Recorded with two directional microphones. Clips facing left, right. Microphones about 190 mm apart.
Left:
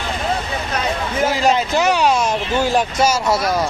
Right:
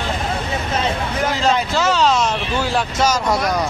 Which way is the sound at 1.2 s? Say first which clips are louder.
Left 2 dB; 10° left (ahead or behind).